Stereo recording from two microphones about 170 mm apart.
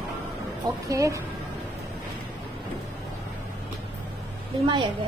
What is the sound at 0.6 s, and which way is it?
Speech, 20° right (ahead or behind).